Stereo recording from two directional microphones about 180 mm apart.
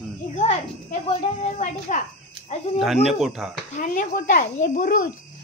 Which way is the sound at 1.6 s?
45° left (ahead or behind).